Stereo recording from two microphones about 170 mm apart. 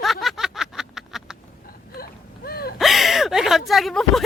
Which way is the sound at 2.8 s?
Centre (ahead or behind).